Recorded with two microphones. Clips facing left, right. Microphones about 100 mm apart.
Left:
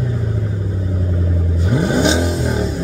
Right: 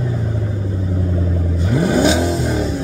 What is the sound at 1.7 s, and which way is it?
Vehicle, 25° left (ahead or behind).